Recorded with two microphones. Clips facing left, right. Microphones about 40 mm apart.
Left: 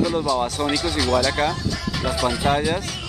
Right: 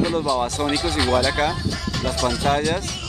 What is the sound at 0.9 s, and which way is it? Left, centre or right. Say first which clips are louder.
Speech: right 1 dB; centre.